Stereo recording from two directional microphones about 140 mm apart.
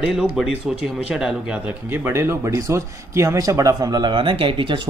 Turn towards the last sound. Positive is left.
turn(degrees=-40)  # may be behind; listen again after turning